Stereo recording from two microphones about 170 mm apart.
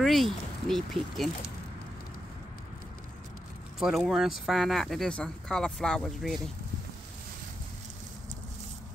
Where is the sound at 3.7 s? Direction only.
Centre (ahead or behind).